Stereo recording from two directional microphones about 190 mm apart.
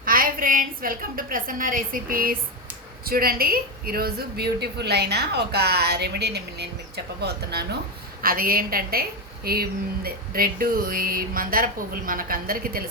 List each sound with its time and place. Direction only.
0.0 s a woman's voice: 50° right (ahead or behind)